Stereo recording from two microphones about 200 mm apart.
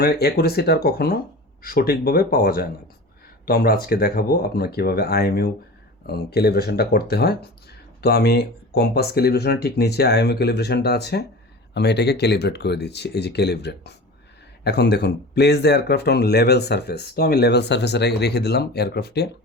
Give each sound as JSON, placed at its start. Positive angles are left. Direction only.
{"t": 0.0, "sound": "speech", "side_deg": 50}